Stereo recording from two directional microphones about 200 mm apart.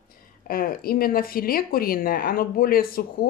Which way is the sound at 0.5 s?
45° left (ahead or behind).